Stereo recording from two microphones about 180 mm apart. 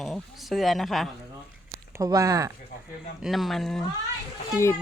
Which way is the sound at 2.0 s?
20° right (ahead or behind).